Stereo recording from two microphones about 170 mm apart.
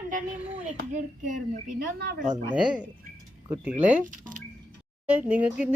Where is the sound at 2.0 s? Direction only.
70° right (ahead or behind).